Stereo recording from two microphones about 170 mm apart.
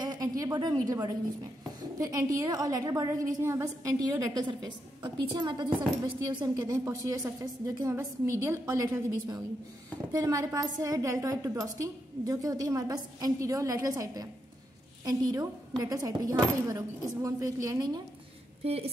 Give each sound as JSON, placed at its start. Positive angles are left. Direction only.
{"t": 0.0, "sound": "a sound", "side_deg": -20}
{"t": 1.8, "sound": "a woman's voice", "side_deg": -20}
{"t": 18.6, "sound": "a woman's voice", "side_deg": -35}